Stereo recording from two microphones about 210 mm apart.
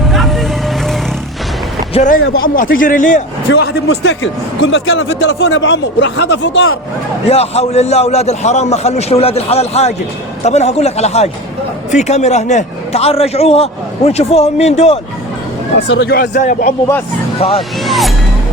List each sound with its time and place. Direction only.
0.1 s vehicle: centre (ahead or behind)
1.9 s speech: 35° left (ahead or behind)
2.2 s a man's voice: 45° left (ahead or behind)
3.5 s speech: 55° left (ahead or behind)
7.3 s a man's voice: 30° left (ahead or behind)
15.9 s a man's voice: 55° left (ahead or behind); by 16.7 s 35° left (ahead or behind)
17.8 s vehicle: centre (ahead or behind)